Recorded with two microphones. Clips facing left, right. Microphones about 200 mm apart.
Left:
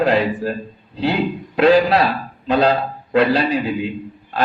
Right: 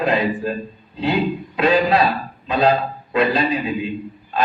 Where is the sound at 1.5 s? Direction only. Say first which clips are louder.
Left 4 dB; 70° left (ahead or behind).